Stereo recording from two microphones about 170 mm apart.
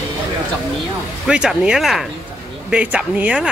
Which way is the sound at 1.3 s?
5° right (ahead or behind).